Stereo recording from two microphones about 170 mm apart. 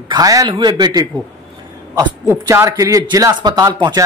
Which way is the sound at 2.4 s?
20° right (ahead or behind).